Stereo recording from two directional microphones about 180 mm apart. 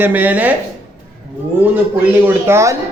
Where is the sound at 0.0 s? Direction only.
10° right (ahead or behind).